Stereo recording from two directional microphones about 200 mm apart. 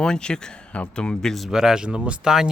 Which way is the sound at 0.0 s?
5° left (ahead or behind).